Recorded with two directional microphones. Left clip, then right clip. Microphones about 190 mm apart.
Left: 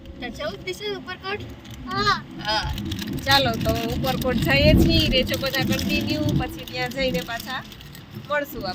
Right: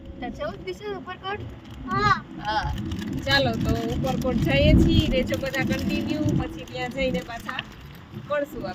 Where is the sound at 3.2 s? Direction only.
15° left (ahead or behind).